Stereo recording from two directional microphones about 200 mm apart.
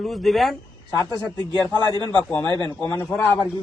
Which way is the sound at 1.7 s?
20° right (ahead or behind).